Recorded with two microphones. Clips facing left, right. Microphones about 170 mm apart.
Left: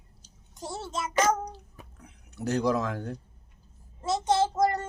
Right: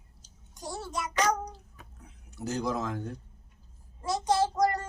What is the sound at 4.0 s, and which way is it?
Child singing, 25° left (ahead or behind).